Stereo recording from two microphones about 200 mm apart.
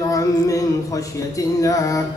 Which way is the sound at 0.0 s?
15° left (ahead or behind).